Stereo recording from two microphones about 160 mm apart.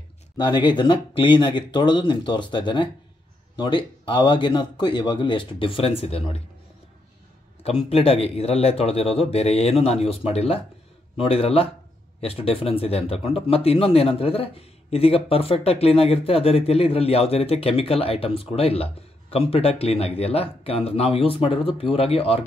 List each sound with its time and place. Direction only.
0.4 s speech: 30° left (ahead or behind)
7.6 s speech: 35° left (ahead or behind)